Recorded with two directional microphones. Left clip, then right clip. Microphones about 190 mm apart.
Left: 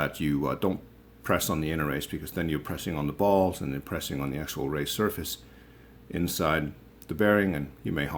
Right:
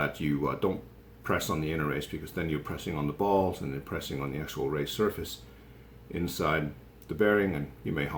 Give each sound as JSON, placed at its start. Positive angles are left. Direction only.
{"t": 0.0, "sound": "speech", "side_deg": 50}